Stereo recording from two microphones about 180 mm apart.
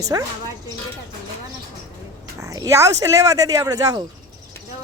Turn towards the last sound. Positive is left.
turn(degrees=-20)  # may be behind; listen again after turning